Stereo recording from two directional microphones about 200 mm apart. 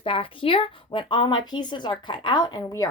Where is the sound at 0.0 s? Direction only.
25° left (ahead or behind).